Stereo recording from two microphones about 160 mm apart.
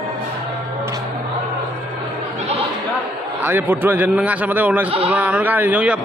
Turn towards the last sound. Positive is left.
turn(degrees=-10)  # may be behind; listen again after turning